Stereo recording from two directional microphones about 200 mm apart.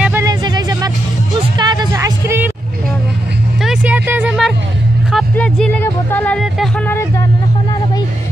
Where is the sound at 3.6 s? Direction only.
5° right (ahead or behind).